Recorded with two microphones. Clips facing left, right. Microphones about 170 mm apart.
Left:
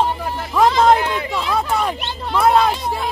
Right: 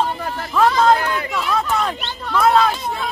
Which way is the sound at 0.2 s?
10° left (ahead or behind).